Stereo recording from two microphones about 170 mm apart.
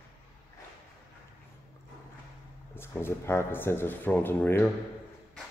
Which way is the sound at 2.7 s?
15° left (ahead or behind).